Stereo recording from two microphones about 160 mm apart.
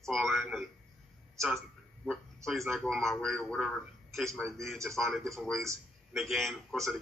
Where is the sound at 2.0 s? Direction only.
Centre (ahead or behind).